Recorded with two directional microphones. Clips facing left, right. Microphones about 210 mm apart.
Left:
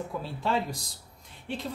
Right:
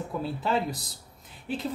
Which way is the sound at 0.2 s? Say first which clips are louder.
Right 3 dB; centre (ahead or behind).